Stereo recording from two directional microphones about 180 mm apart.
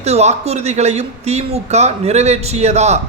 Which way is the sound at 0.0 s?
35° right (ahead or behind).